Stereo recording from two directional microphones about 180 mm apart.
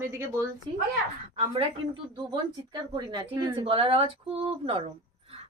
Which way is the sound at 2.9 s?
25° right (ahead or behind).